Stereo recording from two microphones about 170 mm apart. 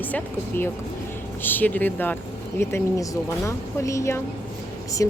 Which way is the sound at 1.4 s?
10° left (ahead or behind).